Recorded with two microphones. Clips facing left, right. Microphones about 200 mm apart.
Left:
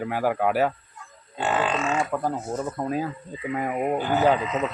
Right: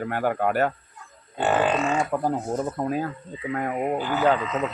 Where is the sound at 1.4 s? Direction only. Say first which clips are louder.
Right 3 dB; 55° right (ahead or behind).